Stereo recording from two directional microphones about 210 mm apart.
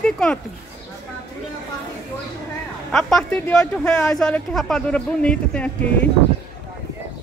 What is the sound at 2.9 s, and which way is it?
Speech, centre (ahead or behind).